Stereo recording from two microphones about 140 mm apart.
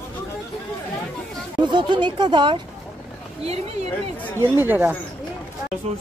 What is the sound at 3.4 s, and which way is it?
Speech, 50° right (ahead or behind).